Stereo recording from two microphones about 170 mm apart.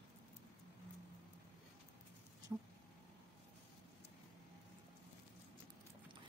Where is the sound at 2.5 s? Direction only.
15° right (ahead or behind).